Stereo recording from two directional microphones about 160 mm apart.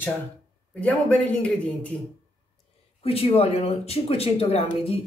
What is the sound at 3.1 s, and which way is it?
Speech, 40° left (ahead or behind).